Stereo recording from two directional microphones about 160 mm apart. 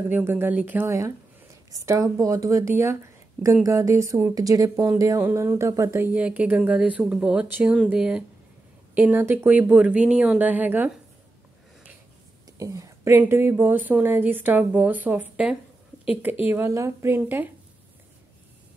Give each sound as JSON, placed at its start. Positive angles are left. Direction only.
{"t": 0.1, "sound": "speech", "side_deg": -15}
{"t": 12.4, "sound": "speech", "side_deg": -20}